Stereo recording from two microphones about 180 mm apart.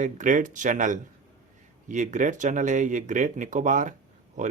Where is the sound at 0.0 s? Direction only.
45° right (ahead or behind).